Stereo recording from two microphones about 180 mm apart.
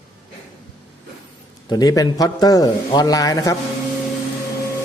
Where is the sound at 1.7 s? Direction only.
20° left (ahead or behind).